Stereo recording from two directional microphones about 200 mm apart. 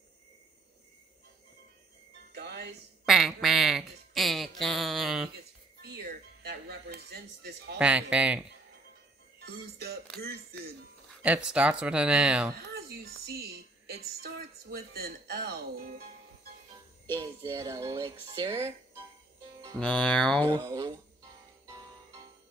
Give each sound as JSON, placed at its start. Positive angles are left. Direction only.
{"t": 2.3, "sound": "music", "side_deg": -55}
{"t": 3.1, "sound": "quack", "side_deg": 0}
{"t": 5.8, "sound": "music", "side_deg": -55}
{"t": 7.8, "sound": "speech", "side_deg": -5}
{"t": 9.4, "sound": "speech", "side_deg": -55}
{"t": 11.2, "sound": "speech", "side_deg": -5}
{"t": 12.5, "sound": "a woman's voice", "side_deg": -50}
{"t": 17.2, "sound": "speech", "side_deg": -15}
{"t": 19.8, "sound": "speech", "side_deg": 5}
{"t": 20.6, "sound": "speech", "side_deg": -20}
{"t": 21.6, "sound": "music", "side_deg": -20}